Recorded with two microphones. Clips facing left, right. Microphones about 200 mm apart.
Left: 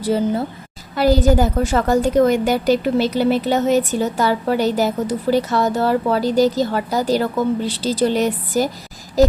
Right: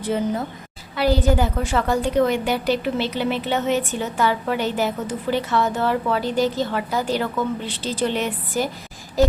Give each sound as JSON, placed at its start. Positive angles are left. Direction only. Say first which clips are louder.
{"t": 0.0, "sound": "a woman's voice", "louder": "left 4 dB", "side_deg": 35}